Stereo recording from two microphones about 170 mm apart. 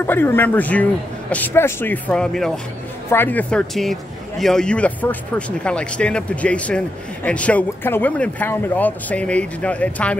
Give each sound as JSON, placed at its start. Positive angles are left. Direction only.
{"t": 0.0, "sound": "a man's voice", "side_deg": 10}